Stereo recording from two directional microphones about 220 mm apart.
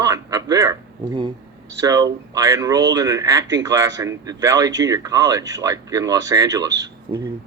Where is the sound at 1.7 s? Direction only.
15° right (ahead or behind).